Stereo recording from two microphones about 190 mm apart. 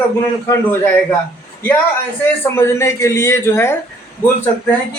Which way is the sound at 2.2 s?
10° left (ahead or behind).